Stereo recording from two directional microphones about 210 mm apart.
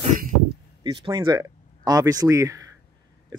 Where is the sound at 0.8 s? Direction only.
20° right (ahead or behind).